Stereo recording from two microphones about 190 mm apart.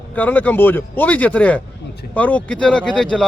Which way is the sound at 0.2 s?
10° left (ahead or behind).